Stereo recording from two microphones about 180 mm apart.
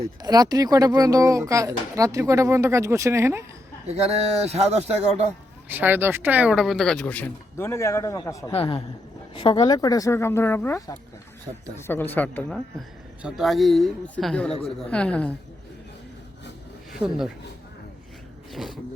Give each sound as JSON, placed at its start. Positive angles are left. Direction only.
{"t": 0.2, "sound": "speech", "side_deg": -20}
{"t": 3.8, "sound": "speech", "side_deg": -35}
{"t": 5.6, "sound": "speech", "side_deg": -10}
{"t": 8.5, "sound": "a man's voice", "side_deg": 30}
{"t": 11.5, "sound": "speech", "side_deg": -35}
{"t": 11.8, "sound": "speech", "side_deg": 10}
{"t": 17.0, "sound": "speech", "side_deg": 0}
{"t": 18.5, "sound": "speech", "side_deg": 0}